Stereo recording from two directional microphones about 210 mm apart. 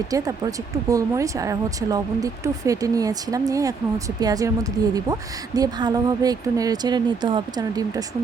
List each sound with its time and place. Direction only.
0.9 s speech: 15° right (ahead or behind)